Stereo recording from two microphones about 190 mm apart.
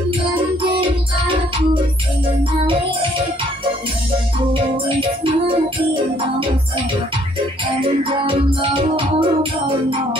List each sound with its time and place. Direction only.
0.6 s music: 25° right (ahead or behind)
7.6 s music: 30° right (ahead or behind)